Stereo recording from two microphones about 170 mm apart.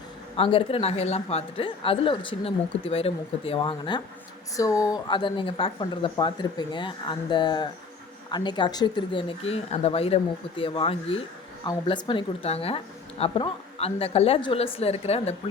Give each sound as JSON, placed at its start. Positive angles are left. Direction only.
{"t": 0.3, "sound": "a woman's voice", "side_deg": 30}